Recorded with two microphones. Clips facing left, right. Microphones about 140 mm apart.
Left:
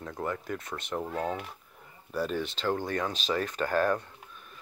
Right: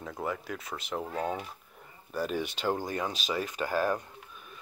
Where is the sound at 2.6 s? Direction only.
10° right (ahead or behind).